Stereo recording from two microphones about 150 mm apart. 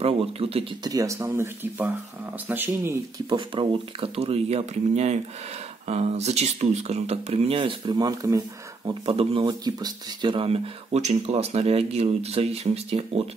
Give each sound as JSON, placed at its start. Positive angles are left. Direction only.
{"t": 0.0, "sound": "speech", "side_deg": -40}
{"t": 0.8, "sound": "speech", "side_deg": -20}
{"t": 3.3, "sound": "speech", "side_deg": -35}
{"t": 9.0, "sound": "speech", "side_deg": -40}